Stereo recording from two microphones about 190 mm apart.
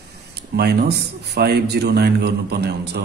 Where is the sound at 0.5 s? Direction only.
55° right (ahead or behind).